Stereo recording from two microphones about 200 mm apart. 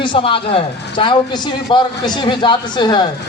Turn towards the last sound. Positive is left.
turn(degrees=20)  # may be behind; listen again after turning